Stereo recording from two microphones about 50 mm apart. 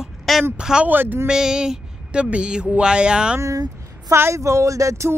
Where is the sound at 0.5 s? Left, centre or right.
Centre.